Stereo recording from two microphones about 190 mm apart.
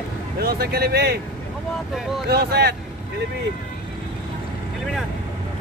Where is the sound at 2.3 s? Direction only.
55° right (ahead or behind).